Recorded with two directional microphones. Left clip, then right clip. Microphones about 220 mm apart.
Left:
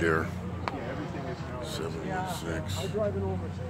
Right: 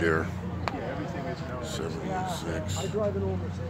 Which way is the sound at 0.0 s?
5° left (ahead or behind).